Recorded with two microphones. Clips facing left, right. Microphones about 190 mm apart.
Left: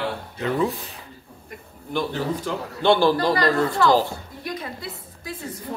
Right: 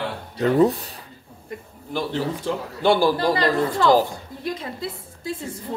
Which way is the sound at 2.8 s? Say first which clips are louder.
Left 1 dB; 10° right (ahead or behind).